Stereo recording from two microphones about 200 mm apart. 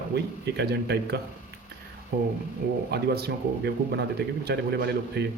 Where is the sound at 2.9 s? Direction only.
55° right (ahead or behind).